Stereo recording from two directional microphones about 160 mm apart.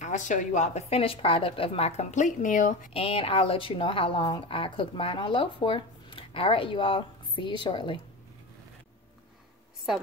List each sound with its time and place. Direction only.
0.0 s a woman's voice: 50° left (ahead or behind)
2.9 s a woman's voice: 35° left (ahead or behind)